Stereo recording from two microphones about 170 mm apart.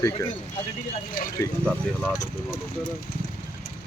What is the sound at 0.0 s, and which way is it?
Speech, 15° left (ahead or behind).